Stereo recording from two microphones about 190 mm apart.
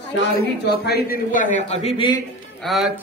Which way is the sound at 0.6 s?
60° left (ahead or behind).